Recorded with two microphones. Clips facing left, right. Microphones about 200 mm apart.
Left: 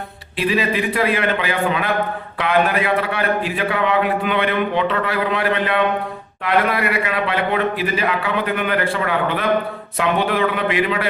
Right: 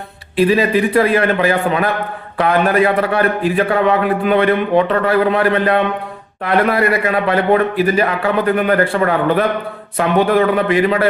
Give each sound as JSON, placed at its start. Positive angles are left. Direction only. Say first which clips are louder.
{"t": 0.3, "sound": "a man's voice", "louder": "right 7 dB", "side_deg": -45}